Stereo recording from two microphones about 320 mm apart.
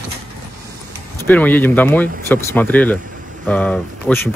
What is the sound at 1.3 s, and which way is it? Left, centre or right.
Speech, centre.